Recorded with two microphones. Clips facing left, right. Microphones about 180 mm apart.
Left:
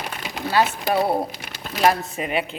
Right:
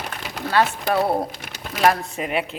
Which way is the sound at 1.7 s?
Centre (ahead or behind).